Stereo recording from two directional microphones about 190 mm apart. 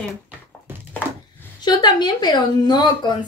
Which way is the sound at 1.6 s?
20° left (ahead or behind).